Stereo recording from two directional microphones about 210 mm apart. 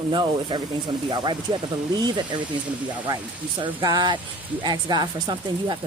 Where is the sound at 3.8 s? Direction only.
20° right (ahead or behind).